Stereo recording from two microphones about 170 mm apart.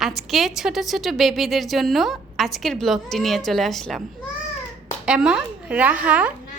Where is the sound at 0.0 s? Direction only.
Centre (ahead or behind).